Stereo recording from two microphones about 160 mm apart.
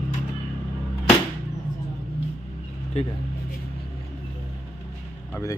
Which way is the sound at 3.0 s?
40° left (ahead or behind).